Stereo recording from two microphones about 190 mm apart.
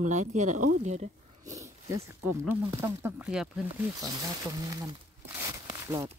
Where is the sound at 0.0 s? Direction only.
40° right (ahead or behind).